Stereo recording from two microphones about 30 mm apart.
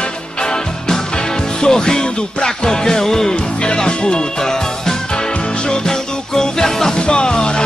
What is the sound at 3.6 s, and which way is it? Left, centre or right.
Music, left.